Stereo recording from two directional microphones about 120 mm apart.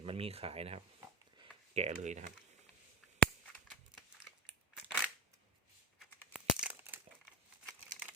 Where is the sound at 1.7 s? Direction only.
70° right (ahead or behind).